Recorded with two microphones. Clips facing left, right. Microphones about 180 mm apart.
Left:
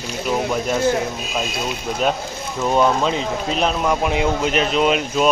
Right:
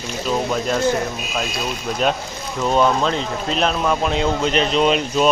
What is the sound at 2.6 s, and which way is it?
Speech, 10° left (ahead or behind).